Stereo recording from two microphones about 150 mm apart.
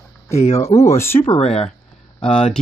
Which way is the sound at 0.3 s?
50° left (ahead or behind).